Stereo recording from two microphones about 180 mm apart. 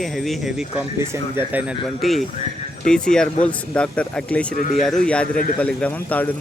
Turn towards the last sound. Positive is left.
turn(degrees=10)  # may be behind; listen again after turning